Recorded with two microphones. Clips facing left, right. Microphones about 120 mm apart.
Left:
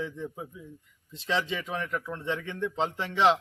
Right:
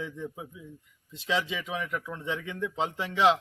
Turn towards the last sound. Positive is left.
turn(degrees=-5)  # may be behind; listen again after turning